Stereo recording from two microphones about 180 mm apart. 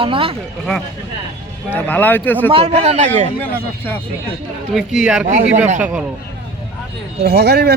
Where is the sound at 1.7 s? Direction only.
10° left (ahead or behind).